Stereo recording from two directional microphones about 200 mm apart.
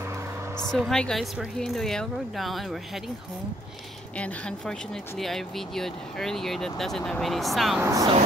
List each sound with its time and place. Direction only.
0.6 s speech: centre (ahead or behind)
4.2 s speech: 5° left (ahead or behind)
7.8 s speech: 15° right (ahead or behind)